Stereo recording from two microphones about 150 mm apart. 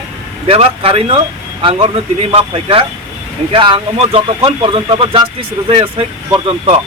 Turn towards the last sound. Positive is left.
turn(degrees=-40)  # may be behind; listen again after turning